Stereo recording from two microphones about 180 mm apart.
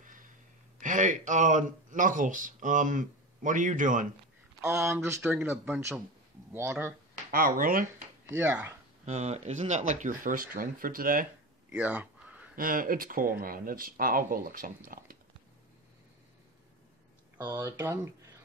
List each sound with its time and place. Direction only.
0.0 s gasp: 45° right (ahead or behind)
0.7 s speech: 45° right (ahead or behind)
4.6 s speech: 15° right (ahead or behind)
7.2 s speech: 50° right (ahead or behind)
8.3 s speech: 10° right (ahead or behind)
9.0 s speech: 40° right (ahead or behind)
11.7 s a sound: 10° right (ahead or behind)
12.5 s speech: 50° right (ahead or behind)
17.4 s speech: 20° right (ahead or behind)